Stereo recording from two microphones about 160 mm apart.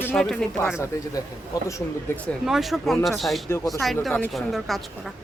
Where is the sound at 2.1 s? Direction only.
15° left (ahead or behind).